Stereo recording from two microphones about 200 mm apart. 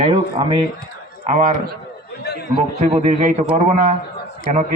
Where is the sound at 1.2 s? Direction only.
40° right (ahead or behind).